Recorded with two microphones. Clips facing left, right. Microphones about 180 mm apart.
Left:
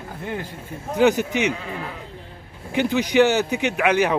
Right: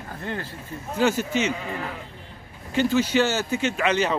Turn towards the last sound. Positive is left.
turn(degrees=10)  # may be behind; listen again after turning